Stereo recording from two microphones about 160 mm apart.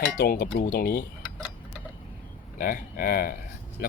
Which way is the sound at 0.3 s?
85° left.